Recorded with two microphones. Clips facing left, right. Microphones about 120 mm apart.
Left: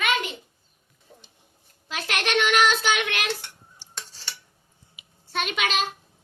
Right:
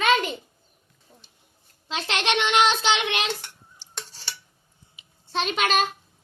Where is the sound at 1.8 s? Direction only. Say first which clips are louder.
Right 2 dB; 25° right (ahead or behind).